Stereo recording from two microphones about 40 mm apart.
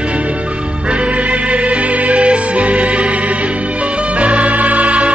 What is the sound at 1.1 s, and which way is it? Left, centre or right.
Music, right.